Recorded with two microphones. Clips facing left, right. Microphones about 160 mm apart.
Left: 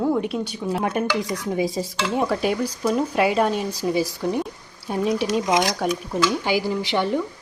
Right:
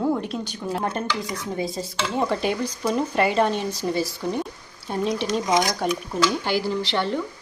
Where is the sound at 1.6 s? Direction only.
10° left (ahead or behind).